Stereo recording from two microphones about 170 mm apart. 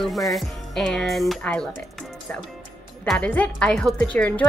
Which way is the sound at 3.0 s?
5° left (ahead or behind).